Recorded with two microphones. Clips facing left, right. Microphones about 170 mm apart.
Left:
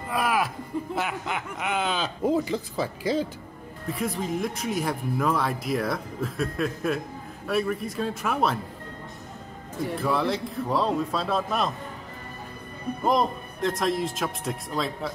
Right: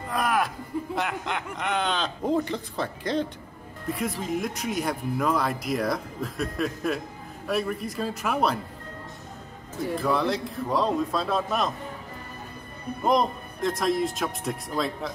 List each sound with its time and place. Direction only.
0.1 s a sound: 5° left (ahead or behind)
0.9 s speech: 5° left (ahead or behind)
10.0 s speech: centre (ahead or behind)
13.0 s speech: centre (ahead or behind)